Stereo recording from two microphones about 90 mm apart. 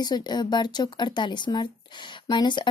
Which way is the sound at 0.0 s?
55° left (ahead or behind).